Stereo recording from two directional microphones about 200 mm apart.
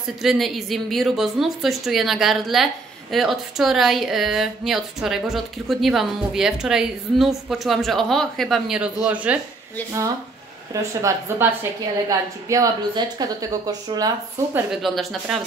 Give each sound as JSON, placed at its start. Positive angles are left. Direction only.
{"t": 0.2, "sound": "speech", "side_deg": 0}
{"t": 10.7, "sound": "speech", "side_deg": -15}
{"t": 14.7, "sound": "speech", "side_deg": 0}